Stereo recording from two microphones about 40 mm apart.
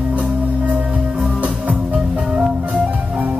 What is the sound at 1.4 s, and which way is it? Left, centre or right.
Music, right.